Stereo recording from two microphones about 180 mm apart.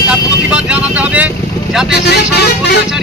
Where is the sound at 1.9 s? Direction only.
65° left (ahead or behind).